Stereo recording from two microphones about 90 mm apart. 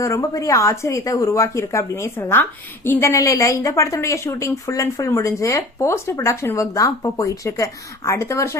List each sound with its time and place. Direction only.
0.0 s speech: 35° left (ahead or behind)